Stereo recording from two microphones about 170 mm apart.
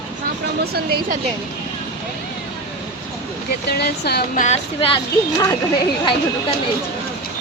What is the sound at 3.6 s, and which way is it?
Speech, 70° left (ahead or behind).